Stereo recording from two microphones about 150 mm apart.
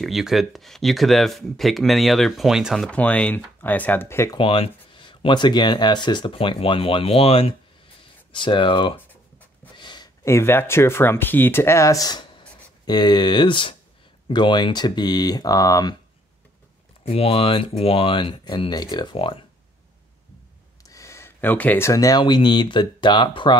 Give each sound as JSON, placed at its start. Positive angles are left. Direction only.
{"t": 0.0, "sound": "speech", "side_deg": 0}
{"t": 4.4, "sound": "speech", "side_deg": 35}
{"t": 9.8, "sound": "a sound", "side_deg": 30}
{"t": 10.2, "sound": "speech", "side_deg": 15}
{"t": 17.0, "sound": "speech", "side_deg": 40}
{"t": 20.9, "sound": "a sound", "side_deg": 20}
{"t": 22.2, "sound": "speech", "side_deg": 30}